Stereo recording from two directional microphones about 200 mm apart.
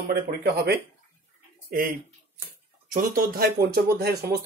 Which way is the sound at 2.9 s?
45° right (ahead or behind).